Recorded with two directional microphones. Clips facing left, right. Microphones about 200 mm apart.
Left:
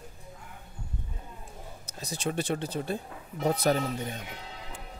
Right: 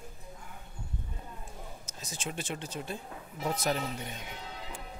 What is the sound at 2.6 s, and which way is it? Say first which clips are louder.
Speech: left 6 dB; 35° left (ahead or behind).